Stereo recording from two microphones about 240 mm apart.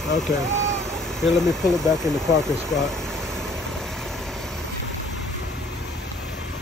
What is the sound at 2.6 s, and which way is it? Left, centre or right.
Vehicle, centre.